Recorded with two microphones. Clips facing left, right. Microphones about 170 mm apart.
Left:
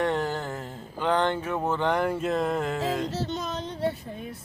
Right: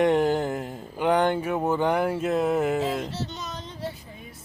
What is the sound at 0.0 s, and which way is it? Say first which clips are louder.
Mantra: right 6 dB; 15° right (ahead or behind).